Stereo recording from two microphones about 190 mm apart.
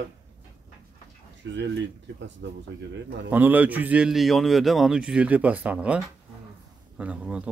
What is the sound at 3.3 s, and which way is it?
A man's voice, 10° right (ahead or behind).